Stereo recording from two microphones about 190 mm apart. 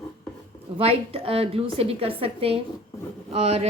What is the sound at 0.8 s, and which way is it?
A woman's voice, 30° right (ahead or behind).